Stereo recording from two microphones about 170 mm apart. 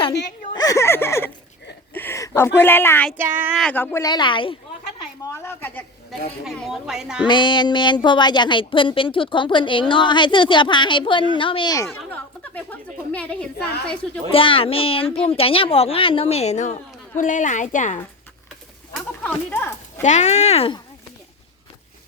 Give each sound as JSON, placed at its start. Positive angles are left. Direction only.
{"t": 0.0, "sound": "a sound", "side_deg": 30}
{"t": 3.2, "sound": "speech", "side_deg": -10}
{"t": 3.6, "sound": "speech", "side_deg": 10}
{"t": 4.0, "sound": "a woman's voice", "side_deg": 25}
{"t": 5.2, "sound": "a sound", "side_deg": 15}
{"t": 6.4, "sound": "a woman's voice", "side_deg": 0}
{"t": 7.3, "sound": "a woman's voice", "side_deg": 25}
{"t": 11.9, "sound": "speech", "side_deg": 10}
{"t": 13.6, "sound": "a woman's voice", "side_deg": 70}
{"t": 13.8, "sound": "a woman's voice", "side_deg": 5}
{"t": 14.3, "sound": "a woman's voice", "side_deg": 30}
{"t": 19.2, "sound": "speech", "side_deg": 10}
{"t": 20.0, "sound": "a woman's voice", "side_deg": 45}